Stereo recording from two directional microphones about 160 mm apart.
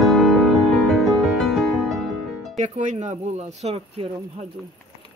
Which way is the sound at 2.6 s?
50° right (ahead or behind).